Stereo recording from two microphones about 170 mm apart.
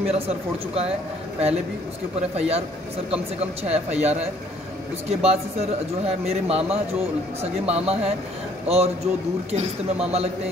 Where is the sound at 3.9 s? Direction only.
40° right (ahead or behind).